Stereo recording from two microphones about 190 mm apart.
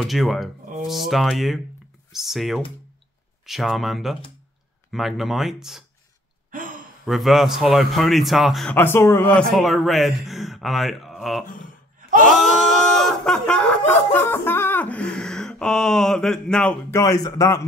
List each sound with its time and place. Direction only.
0.0 s a man's voice: centre (ahead or behind)
6.5 s sigh: 45° right (ahead or behind)
7.1 s a man's voice: centre (ahead or behind)
12.3 s a sound: centre (ahead or behind)
16.9 s speech: 20° left (ahead or behind)